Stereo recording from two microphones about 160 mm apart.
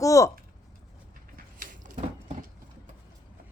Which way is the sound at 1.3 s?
60° right (ahead or behind).